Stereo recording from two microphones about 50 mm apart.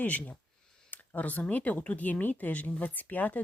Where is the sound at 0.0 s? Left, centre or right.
Left.